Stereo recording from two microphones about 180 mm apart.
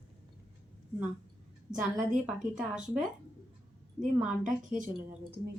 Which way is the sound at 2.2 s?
5° right (ahead or behind).